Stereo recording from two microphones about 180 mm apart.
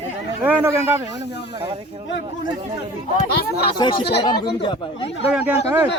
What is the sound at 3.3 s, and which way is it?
Speech, 65° left (ahead or behind).